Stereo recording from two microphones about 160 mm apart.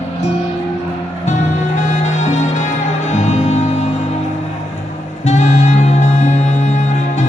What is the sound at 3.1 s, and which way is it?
Music, 45° left (ahead or behind).